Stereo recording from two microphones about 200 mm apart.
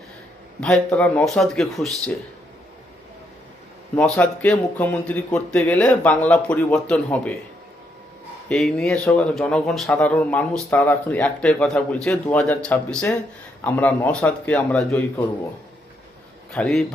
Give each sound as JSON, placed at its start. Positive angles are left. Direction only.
{"t": 0.6, "sound": "speech", "side_deg": 5}
{"t": 3.9, "sound": "speech", "side_deg": 5}
{"t": 8.4, "sound": "speech", "side_deg": 0}
{"t": 16.5, "sound": "speech", "side_deg": 5}